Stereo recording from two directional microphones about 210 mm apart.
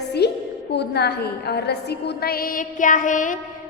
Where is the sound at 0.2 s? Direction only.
50° left (ahead or behind).